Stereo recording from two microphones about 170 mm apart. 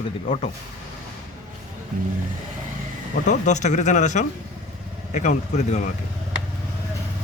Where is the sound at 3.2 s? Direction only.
45° left (ahead or behind).